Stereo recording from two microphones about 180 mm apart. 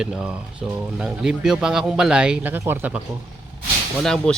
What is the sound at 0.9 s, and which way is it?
Speech, 5° right (ahead or behind).